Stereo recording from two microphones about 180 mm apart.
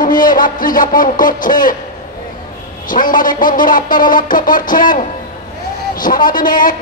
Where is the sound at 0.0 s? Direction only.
50° left (ahead or behind).